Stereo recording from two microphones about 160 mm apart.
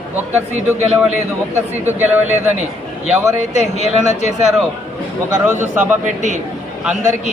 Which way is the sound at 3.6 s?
45° left (ahead or behind).